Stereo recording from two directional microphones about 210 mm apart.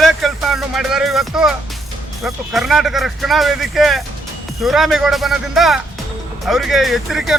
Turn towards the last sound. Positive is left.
turn(degrees=0)  # may be behind; listen again after turning